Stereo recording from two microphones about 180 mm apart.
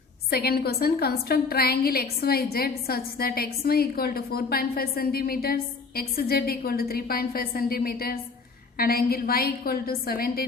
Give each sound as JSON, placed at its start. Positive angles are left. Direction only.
{"t": 0.3, "sound": "a woman's voice", "side_deg": 60}